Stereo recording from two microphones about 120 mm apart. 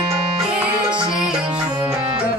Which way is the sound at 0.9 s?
40° right (ahead or behind).